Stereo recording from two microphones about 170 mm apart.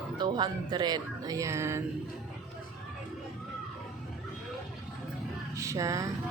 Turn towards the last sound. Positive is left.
turn(degrees=-20)  # may be behind; listen again after turning